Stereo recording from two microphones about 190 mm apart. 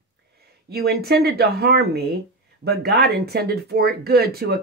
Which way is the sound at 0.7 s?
55° right (ahead or behind).